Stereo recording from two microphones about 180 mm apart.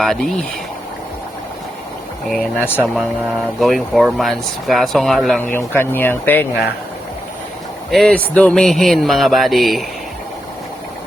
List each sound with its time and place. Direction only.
0.0 s speech: centre (ahead or behind)
2.7 s speech: centre (ahead or behind)
5.5 s speech: 10° left (ahead or behind)
7.9 s speech: 5° left (ahead or behind)